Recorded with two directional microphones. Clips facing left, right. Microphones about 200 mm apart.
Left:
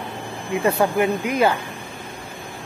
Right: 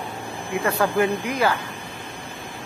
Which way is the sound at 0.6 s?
20° left (ahead or behind).